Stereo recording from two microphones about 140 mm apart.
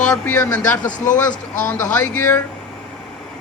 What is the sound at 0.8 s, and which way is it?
Speech, 65° left (ahead or behind).